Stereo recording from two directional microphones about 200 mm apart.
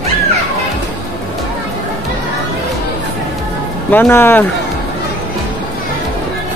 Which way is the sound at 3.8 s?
10° left (ahead or behind).